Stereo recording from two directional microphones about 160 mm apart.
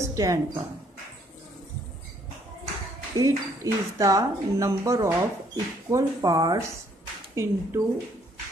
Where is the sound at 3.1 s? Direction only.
20° right (ahead or behind).